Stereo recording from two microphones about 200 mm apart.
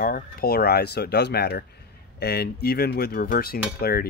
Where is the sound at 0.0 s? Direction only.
50° left (ahead or behind).